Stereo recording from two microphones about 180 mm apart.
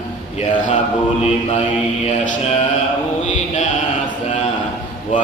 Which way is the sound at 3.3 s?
40° left (ahead or behind).